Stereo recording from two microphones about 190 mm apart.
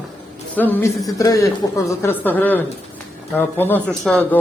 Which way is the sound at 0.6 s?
10° left (ahead or behind).